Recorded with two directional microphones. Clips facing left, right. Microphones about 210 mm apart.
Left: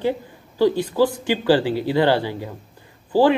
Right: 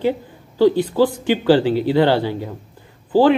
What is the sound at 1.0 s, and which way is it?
Speech, 15° right (ahead or behind).